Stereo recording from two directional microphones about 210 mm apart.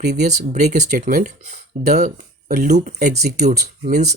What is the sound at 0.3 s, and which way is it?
Speech, 35° right (ahead or behind).